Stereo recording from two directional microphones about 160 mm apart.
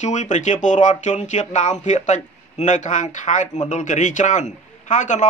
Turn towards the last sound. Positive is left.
turn(degrees=50)  # may be behind; listen again after turning